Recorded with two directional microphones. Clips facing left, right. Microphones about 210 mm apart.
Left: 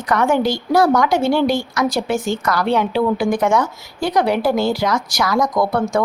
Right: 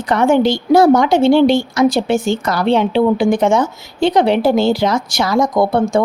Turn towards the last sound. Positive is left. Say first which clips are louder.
# right 4 dB
turn(degrees=-25)  # may be behind; listen again after turning